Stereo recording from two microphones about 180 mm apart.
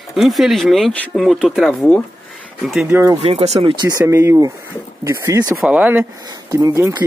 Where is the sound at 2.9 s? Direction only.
10° right (ahead or behind).